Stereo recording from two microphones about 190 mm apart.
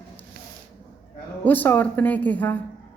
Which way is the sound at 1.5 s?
10° left (ahead or behind).